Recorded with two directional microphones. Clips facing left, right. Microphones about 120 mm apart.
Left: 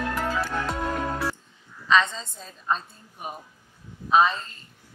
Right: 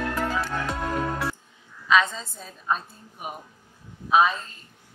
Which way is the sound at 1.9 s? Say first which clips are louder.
Even; 5° right (ahead or behind).